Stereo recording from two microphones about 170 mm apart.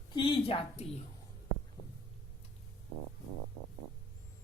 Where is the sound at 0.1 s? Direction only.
30° left (ahead or behind).